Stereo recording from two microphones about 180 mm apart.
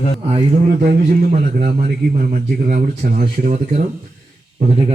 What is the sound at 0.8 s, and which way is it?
Speech, 60° right (ahead or behind).